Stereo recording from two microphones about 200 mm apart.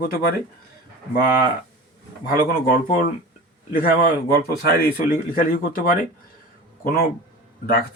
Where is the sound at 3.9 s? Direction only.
50° left (ahead or behind).